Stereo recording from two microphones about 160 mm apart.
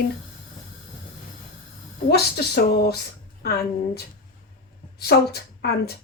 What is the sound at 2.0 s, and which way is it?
A woman's voice, 90° left.